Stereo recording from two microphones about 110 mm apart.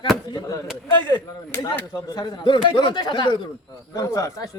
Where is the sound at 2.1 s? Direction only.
40° left (ahead or behind).